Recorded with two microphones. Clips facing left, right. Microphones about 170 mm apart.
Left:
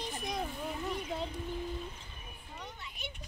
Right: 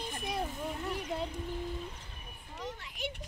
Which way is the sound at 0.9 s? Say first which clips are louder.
Right 1 dB; 5° right (ahead or behind).